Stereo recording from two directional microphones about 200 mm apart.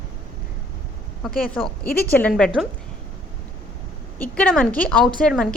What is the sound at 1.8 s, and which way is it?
Speech, 50° left (ahead or behind).